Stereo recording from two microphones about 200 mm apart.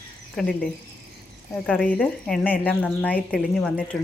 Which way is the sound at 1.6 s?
5° left (ahead or behind).